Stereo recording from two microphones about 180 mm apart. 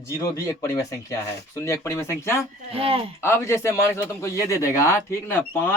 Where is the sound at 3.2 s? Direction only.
15° left (ahead or behind).